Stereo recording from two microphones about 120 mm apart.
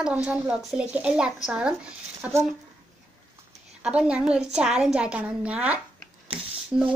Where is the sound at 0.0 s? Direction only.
10° right (ahead or behind).